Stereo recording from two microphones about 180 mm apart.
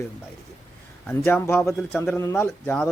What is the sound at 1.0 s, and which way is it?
Speech, 10° left (ahead or behind).